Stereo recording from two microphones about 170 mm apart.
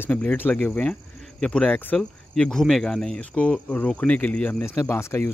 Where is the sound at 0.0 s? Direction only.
10° left (ahead or behind).